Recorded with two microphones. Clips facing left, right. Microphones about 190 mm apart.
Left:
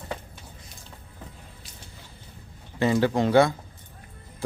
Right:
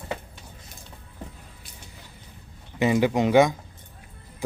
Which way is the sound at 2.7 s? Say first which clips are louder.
Right 1 dB; 15° right (ahead or behind).